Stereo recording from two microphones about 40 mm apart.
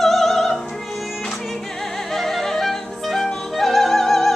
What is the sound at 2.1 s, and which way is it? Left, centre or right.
Music, centre.